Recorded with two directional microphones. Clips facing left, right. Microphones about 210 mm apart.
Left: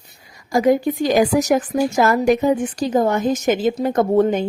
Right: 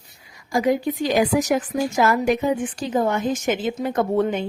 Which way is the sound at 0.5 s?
45° left (ahead or behind).